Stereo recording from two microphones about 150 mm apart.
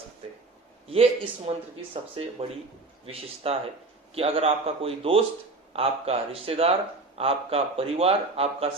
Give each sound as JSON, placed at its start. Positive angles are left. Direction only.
{"t": 0.9, "sound": "speech", "side_deg": -40}